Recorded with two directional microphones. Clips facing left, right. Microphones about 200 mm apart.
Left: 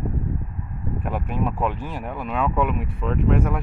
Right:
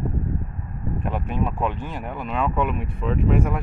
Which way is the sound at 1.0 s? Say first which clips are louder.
Even; 5° left (ahead or behind).